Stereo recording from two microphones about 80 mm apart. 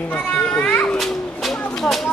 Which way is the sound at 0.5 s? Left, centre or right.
Centre.